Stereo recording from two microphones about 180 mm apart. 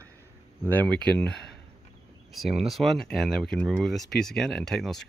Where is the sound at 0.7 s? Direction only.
10° left (ahead or behind).